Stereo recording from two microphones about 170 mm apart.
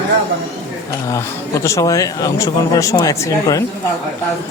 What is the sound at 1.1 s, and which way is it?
Speech, 20° left (ahead or behind).